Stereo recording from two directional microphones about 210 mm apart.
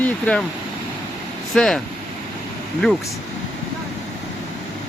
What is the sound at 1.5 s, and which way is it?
Speech, centre (ahead or behind).